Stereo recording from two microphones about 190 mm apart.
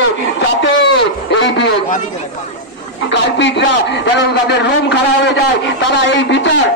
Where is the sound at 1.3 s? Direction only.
70° left (ahead or behind).